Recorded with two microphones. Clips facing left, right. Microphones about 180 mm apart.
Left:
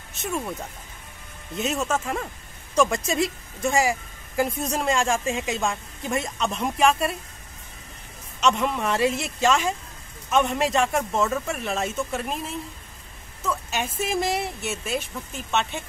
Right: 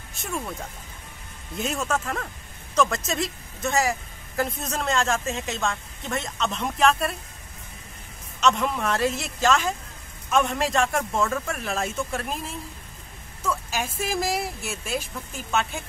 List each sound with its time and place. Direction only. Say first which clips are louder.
0.2 s a woman's voice: left 3 dB; 5° left (ahead or behind)
8.4 s speech: even; 5° left (ahead or behind)